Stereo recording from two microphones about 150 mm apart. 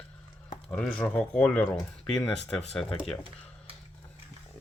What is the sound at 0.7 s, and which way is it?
Speech, 5° left (ahead or behind).